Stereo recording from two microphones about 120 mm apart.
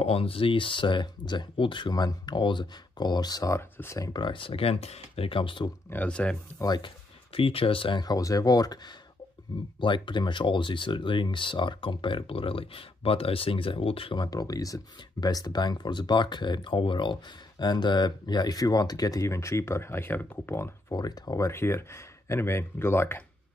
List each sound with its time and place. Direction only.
0.0 s speech: 55° left (ahead or behind); by 4.1 s 25° left (ahead or behind)
4.1 s speech: 40° left (ahead or behind)
5.9 s speech: 10° left (ahead or behind)
6.6 s speech: 35° left (ahead or behind)
7.3 s speech: 50° left (ahead or behind)
8.0 s speech: 30° left (ahead or behind)
9.8 s speech: 40° left (ahead or behind); by 20.7 s 20° left (ahead or behind)
20.9 s speech: 35° left (ahead or behind)